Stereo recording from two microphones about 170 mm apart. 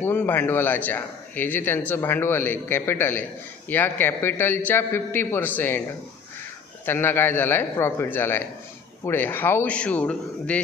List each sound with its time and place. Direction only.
0.0 s a man's voice: 10° left (ahead or behind)
6.9 s a man's voice: 15° left (ahead or behind)